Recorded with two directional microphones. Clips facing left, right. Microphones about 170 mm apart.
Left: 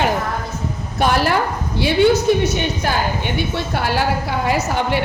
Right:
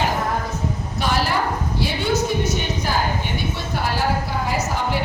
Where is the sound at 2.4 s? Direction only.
70° left (ahead or behind).